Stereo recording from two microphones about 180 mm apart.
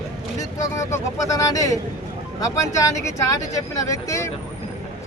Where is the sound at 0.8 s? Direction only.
20° left (ahead or behind).